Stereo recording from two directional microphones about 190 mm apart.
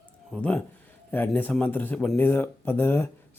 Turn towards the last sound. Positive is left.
turn(degrees=10)  # may be behind; listen again after turning